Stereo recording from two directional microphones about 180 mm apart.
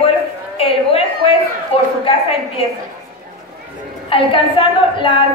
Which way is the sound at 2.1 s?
30° left (ahead or behind).